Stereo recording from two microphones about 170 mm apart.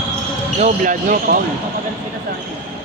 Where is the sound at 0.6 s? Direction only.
50° right (ahead or behind).